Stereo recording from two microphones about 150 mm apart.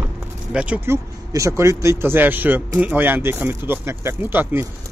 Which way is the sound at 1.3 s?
20° right (ahead or behind).